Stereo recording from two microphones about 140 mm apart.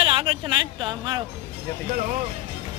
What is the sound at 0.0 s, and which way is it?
Speech, 40° right (ahead or behind).